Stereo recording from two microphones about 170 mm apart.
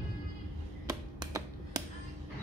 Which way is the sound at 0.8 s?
20° right (ahead or behind).